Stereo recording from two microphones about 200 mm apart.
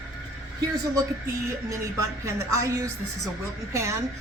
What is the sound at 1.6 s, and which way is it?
A woman's voice, 15° right (ahead or behind).